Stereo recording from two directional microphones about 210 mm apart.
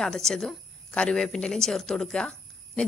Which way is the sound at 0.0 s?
Centre (ahead or behind).